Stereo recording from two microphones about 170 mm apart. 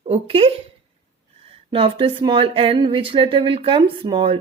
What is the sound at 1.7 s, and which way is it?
Speech, 30° right (ahead or behind).